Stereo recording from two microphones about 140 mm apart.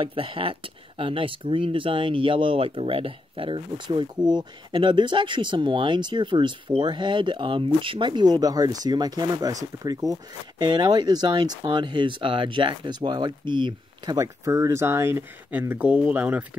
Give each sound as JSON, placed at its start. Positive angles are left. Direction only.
{"t": 0.0, "sound": "speech", "side_deg": -40}